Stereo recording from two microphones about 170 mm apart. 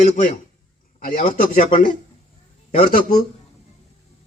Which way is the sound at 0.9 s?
55° left (ahead or behind).